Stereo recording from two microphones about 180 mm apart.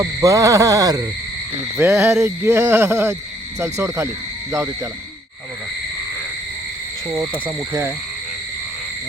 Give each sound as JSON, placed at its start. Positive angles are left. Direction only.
{"t": 0.0, "sound": "frog", "side_deg": -20}
{"t": 7.2, "sound": "frog", "side_deg": -10}